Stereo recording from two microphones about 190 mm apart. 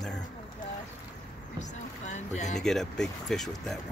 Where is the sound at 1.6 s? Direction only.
40° left (ahead or behind).